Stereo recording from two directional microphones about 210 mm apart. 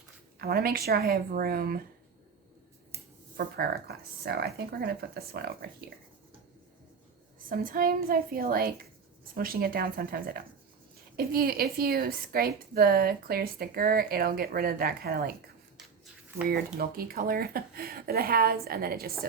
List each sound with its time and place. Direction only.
0.3 s a woman's voice: 45° right (ahead or behind)
3.3 s a woman's voice: 45° right (ahead or behind)
7.3 s a woman's voice: 40° right (ahead or behind)
16.5 s a woman's voice: 45° right (ahead or behind)